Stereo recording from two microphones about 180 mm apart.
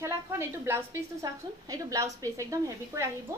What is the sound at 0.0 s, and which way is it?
A woman's voice, 15° right (ahead or behind).